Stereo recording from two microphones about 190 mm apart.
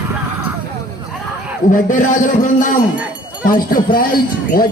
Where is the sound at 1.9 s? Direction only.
45° left (ahead or behind).